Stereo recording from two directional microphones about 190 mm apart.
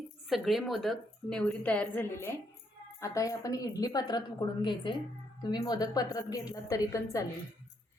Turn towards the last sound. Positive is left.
turn(degrees=15)  # may be behind; listen again after turning